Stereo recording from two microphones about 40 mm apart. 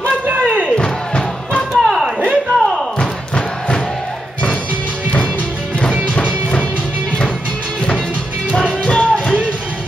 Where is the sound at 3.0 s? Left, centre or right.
Left.